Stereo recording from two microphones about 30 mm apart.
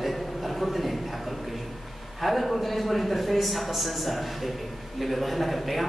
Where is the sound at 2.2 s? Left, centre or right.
Centre.